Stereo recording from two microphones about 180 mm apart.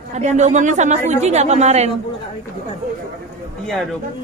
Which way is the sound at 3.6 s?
Centre (ahead or behind).